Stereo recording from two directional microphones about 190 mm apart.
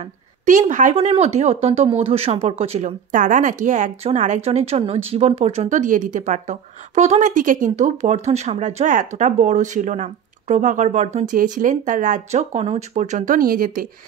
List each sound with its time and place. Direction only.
0.5 s speech: 40° right (ahead or behind)